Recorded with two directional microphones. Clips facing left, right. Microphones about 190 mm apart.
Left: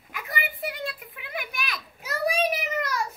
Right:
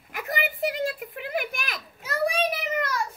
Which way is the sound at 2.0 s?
5° left (ahead or behind).